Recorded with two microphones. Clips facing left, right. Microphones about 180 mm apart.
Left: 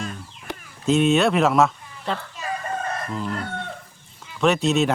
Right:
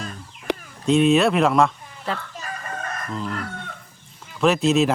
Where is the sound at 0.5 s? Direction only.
85° right.